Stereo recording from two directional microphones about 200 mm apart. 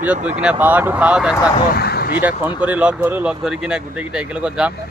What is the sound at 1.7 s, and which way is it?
Speech, 50° left (ahead or behind).